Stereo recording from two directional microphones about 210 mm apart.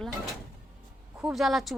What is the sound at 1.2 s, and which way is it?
Speech, 5° right (ahead or behind).